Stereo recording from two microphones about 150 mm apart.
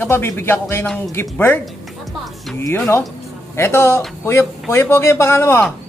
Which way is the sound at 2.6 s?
15° left (ahead or behind).